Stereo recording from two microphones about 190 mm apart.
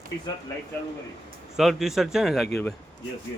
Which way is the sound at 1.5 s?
Centre (ahead or behind).